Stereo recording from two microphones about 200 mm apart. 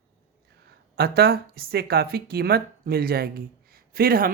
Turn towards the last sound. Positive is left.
turn(degrees=-50)  # may be behind; listen again after turning